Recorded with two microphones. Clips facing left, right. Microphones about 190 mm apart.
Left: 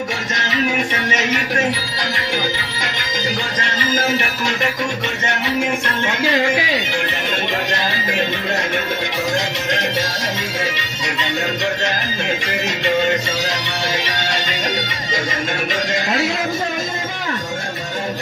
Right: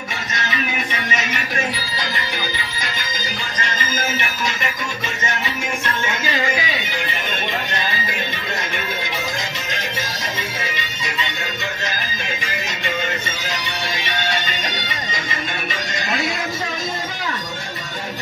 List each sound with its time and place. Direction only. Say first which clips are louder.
4.1 s speech: left 5 dB; 65° left (ahead or behind)
11.8 s music: left 6 dB; 70° left (ahead or behind)
13.5 s music: left 4 dB; 90° left